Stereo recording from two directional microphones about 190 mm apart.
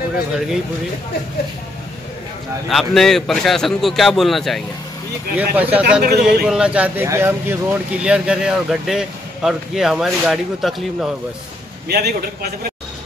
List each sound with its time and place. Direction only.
2.7 s speech: centre (ahead or behind)
11.9 s a man's voice: 55° right (ahead or behind)